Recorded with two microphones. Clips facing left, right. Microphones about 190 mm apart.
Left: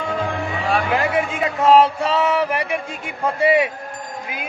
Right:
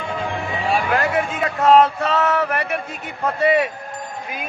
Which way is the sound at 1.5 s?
25° left (ahead or behind).